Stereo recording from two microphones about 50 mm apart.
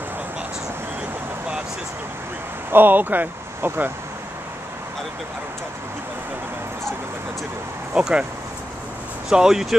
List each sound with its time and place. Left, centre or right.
2.7 s speech: right
7.9 s speech: centre
9.3 s speech: centre